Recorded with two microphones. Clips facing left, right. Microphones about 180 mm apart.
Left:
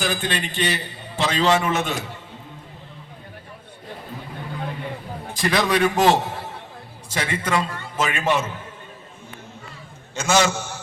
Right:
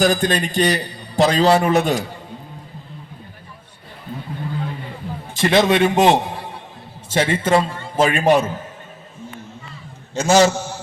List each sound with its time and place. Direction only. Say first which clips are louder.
0.0 s a man's voice: right 8 dB; 40° right (ahead or behind)
5.4 s a man's voice: right 5 dB; 25° right (ahead or behind)
7.1 s a man's voice: right 7 dB; 25° right (ahead or behind)
10.2 s a man's voice: right 6 dB; 40° right (ahead or behind)